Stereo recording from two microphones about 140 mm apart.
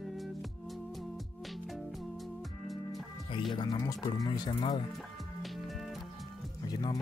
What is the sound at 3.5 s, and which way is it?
Speech, 25° left (ahead or behind).